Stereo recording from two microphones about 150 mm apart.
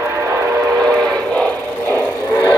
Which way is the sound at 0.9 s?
5° left (ahead or behind).